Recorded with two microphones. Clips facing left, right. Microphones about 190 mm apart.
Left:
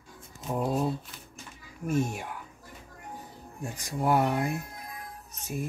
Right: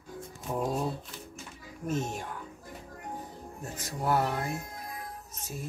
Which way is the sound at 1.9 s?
10° left (ahead or behind).